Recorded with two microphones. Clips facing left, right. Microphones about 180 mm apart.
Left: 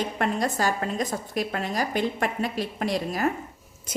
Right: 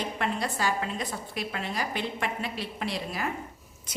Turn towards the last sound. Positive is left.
turn(degrees=45)  # may be behind; listen again after turning